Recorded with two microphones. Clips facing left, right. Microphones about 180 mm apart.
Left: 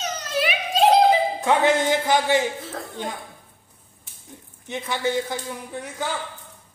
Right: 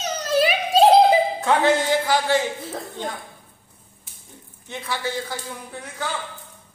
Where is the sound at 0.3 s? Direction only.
35° right (ahead or behind).